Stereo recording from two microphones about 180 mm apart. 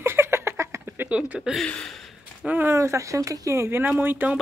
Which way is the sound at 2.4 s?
10° right (ahead or behind).